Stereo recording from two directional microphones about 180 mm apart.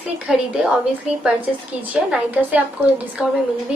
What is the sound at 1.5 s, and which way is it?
A woman's voice, 5° right (ahead or behind).